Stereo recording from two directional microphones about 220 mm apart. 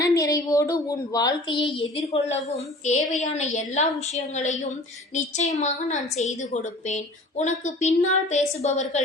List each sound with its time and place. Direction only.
0.0 s a woman's voice: 15° left (ahead or behind); by 9.0 s 30° left (ahead or behind)